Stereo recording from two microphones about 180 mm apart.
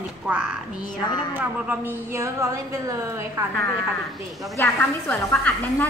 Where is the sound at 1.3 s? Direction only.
10° right (ahead or behind).